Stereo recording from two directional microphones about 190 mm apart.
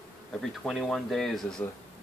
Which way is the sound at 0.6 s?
5° left (ahead or behind).